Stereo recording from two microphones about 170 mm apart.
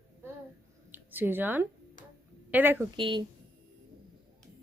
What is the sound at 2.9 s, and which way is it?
Speech, 30° right (ahead or behind).